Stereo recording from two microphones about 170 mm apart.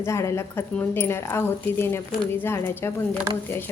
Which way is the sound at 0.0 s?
15° left (ahead or behind).